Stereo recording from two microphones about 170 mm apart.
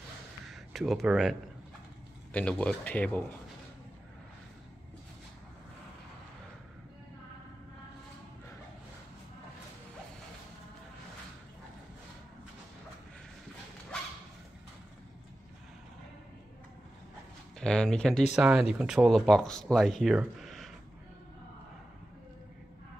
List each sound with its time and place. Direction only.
0.5 s a sound: centre (ahead or behind)
2.3 s speech: 10° left (ahead or behind)
17.6 s speech: 5° left (ahead or behind)